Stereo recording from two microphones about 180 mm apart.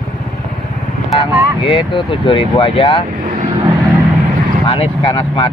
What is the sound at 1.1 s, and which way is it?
Speech, 30° left (ahead or behind).